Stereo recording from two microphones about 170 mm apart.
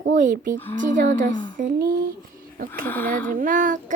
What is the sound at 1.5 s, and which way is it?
Speech, 55° right (ahead or behind).